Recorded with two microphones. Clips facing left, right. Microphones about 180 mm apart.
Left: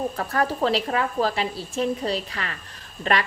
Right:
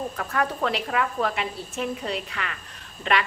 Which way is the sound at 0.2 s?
35° left (ahead or behind).